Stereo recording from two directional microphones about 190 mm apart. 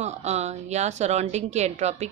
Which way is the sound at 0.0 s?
35° right (ahead or behind).